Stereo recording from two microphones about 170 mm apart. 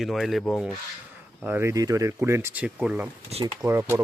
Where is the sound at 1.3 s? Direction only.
15° right (ahead or behind).